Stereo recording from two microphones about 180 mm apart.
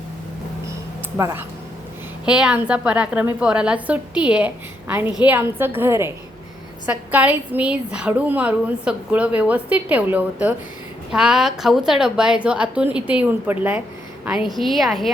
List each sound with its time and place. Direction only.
1.1 s a woman's voice: 15° right (ahead or behind)